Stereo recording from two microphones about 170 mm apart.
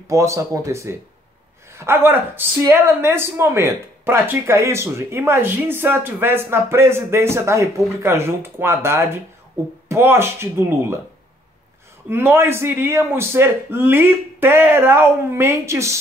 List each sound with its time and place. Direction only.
0.1 s a woman's voice: 15° right (ahead or behind)
12.1 s a woman's voice: 15° right (ahead or behind)